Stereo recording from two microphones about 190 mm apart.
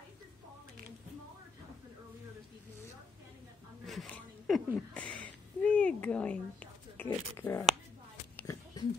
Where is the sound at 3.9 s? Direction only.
Centre (ahead or behind); by 8.8 s 15° left (ahead or behind).